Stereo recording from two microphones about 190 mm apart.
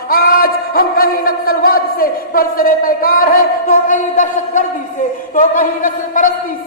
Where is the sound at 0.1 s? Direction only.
55° left (ahead or behind).